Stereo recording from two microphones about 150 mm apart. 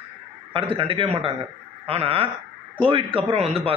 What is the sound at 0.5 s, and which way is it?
A man's voice, 35° right (ahead or behind).